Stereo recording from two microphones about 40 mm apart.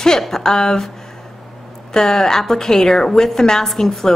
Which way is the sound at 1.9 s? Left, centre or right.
Centre.